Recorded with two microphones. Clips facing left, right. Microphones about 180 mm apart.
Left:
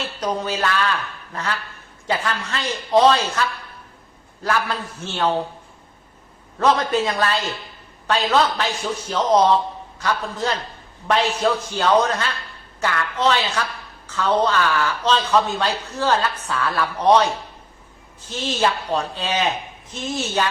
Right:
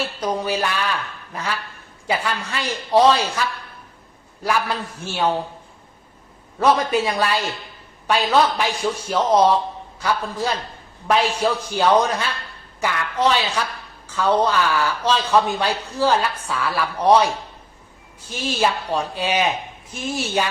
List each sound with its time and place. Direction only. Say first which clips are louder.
0.0 s a man's voice: right 1 dB; 10° right (ahead or behind)
2.0 s a man's voice: even; 10° right (ahead or behind)
4.4 s a man's voice: right 1 dB; 10° right (ahead or behind)
6.6 s a man's voice: right 1 dB; 10° right (ahead or behind)